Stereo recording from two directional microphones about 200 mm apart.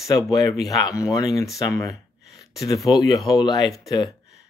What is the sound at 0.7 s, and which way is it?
Speech, 15° left (ahead or behind).